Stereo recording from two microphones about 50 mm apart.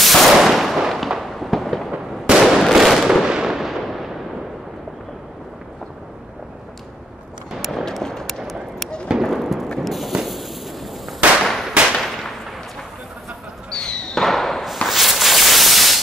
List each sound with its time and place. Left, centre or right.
0.0 s gunshot: centre
0.4 s fireworks: centre
1.9 s fireworks: centre
7.5 s a sound: centre
8.4 s a sound: centre
11.1 s firecracker: centre
13.7 s a sound: centre
14.2 s thump: centre
14.9 s sanding: centre